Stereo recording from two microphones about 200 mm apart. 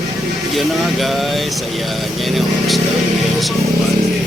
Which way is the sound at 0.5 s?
Centre (ahead or behind).